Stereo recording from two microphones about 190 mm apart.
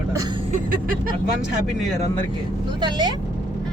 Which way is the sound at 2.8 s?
25° right (ahead or behind).